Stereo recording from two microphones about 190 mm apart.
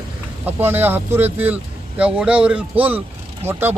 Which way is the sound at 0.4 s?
10° right (ahead or behind).